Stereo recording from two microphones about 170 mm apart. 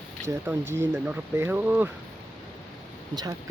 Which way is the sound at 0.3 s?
15° right (ahead or behind).